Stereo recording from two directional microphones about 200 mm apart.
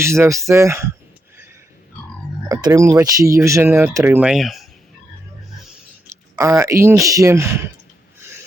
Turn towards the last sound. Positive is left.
turn(degrees=-15)  # may be behind; listen again after turning